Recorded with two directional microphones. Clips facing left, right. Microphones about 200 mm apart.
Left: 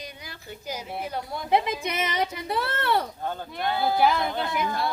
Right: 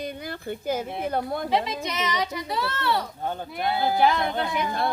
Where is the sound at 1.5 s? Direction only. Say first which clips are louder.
Left 2 dB; 55° left (ahead or behind).